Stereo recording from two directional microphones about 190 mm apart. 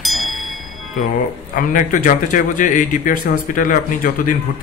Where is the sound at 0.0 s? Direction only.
Centre (ahead or behind).